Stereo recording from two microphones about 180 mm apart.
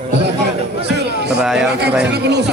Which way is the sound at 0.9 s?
65° right (ahead or behind).